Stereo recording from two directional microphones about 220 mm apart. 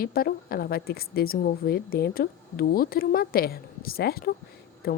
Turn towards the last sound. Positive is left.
turn(degrees=45)  # may be behind; listen again after turning